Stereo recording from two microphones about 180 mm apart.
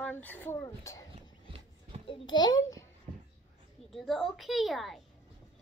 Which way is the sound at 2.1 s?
25° left (ahead or behind).